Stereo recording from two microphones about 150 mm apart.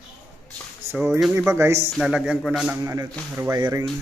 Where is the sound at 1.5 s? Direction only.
20° right (ahead or behind).